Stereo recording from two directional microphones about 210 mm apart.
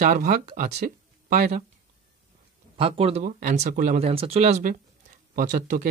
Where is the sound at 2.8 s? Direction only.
25° right (ahead or behind).